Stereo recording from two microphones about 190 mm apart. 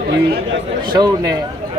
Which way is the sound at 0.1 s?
70° right (ahead or behind).